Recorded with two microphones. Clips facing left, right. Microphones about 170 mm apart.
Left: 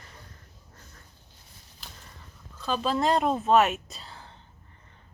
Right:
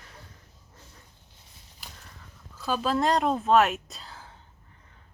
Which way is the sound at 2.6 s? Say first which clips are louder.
Right 1 dB; 5° right (ahead or behind).